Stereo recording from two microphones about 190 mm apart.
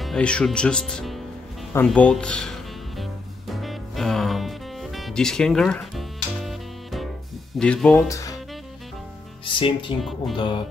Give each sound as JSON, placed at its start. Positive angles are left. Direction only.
{"t": 0.0, "sound": "speech", "side_deg": 5}
{"t": 3.0, "sound": "music", "side_deg": 0}
{"t": 7.5, "sound": "speech", "side_deg": 5}
{"t": 8.1, "sound": "music", "side_deg": 15}
{"t": 9.4, "sound": "speech", "side_deg": 25}